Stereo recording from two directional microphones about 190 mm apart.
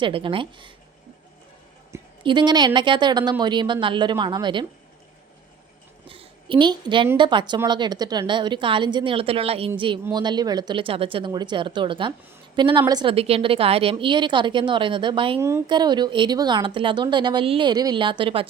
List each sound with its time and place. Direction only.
0.0 s a woman's voice: 25° right (ahead or behind)
2.2 s a woman's voice: 25° right (ahead or behind)
6.1 s a woman's voice: 25° right (ahead or behind)
15.4 s a woman's voice: 15° right (ahead or behind)